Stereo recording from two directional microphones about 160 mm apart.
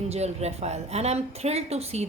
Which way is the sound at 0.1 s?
40° right (ahead or behind).